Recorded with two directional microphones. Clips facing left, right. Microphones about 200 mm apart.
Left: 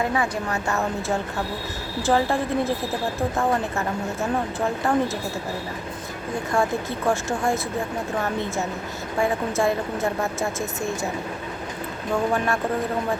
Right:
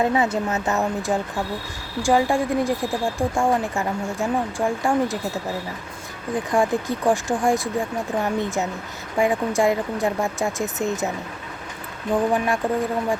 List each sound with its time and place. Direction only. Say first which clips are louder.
0.0 s speech: right 4 dB; 20° right (ahead or behind)
6.3 s speech: right 3 dB; 15° right (ahead or behind)
12.1 s speech: right 2 dB; 15° right (ahead or behind)